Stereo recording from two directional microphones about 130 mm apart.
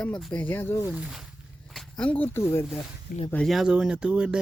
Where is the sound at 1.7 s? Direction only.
10° left (ahead or behind).